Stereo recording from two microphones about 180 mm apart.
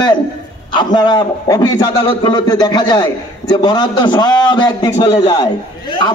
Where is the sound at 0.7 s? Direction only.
25° left (ahead or behind).